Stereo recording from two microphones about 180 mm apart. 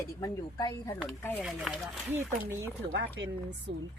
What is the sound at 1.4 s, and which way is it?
Speech, centre (ahead or behind).